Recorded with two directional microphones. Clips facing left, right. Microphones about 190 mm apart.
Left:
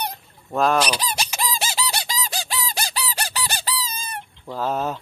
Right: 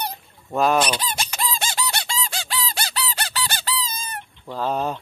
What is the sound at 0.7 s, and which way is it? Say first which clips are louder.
Fowl: right 1 dB; 25° right (ahead or behind).